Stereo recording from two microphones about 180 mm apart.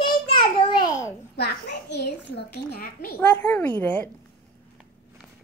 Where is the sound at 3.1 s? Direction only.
10° left (ahead or behind).